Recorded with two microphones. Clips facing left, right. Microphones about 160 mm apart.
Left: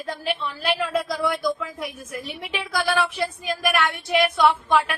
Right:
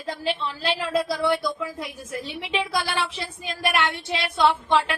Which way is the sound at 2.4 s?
25° right (ahead or behind).